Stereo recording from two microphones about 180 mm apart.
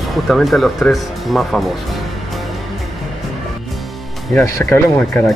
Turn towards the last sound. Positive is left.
turn(degrees=10)  # may be behind; listen again after turning